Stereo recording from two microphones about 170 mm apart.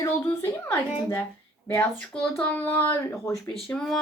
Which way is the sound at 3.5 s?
Centre (ahead or behind).